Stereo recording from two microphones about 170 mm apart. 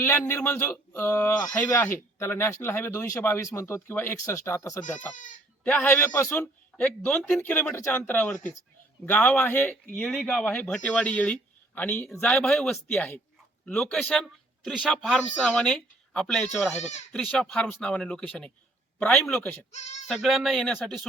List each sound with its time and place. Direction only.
0.0 s a man's voice: 15° left (ahead or behind)
5.1 s speech: 50° left (ahead or behind)
5.6 s a man's voice: 10° left (ahead or behind)